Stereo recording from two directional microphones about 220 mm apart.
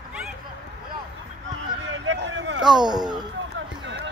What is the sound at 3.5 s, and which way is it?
Run, 55° right (ahead or behind).